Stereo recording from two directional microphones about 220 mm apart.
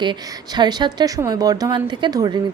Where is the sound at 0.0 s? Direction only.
20° right (ahead or behind).